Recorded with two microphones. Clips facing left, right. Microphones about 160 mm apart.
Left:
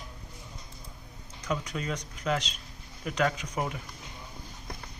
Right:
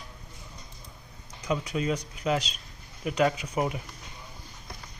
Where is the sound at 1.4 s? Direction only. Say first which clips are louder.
Right 4 dB; 10° right (ahead or behind).